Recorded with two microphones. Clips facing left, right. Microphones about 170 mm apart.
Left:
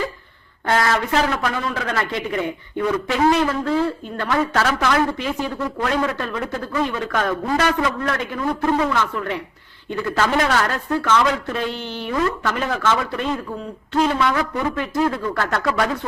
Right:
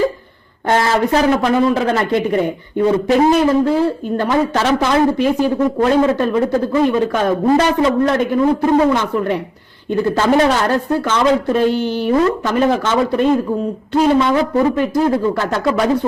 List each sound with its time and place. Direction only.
0.7 s speech: 30° right (ahead or behind)
5.0 s a man's voice: 40° right (ahead or behind)
5.8 s speech: 25° right (ahead or behind)
9.0 s speech: 20° right (ahead or behind)
11.7 s speech: 10° right (ahead or behind)
12.1 s speech: 30° right (ahead or behind)
13.1 s a man's voice: 45° right (ahead or behind)
14.1 s speech: 25° right (ahead or behind)